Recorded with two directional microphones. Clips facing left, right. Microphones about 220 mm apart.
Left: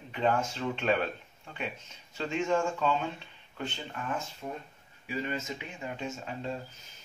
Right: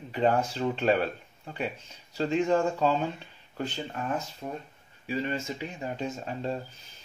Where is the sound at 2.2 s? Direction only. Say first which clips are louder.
Right 4 dB; 35° right (ahead or behind).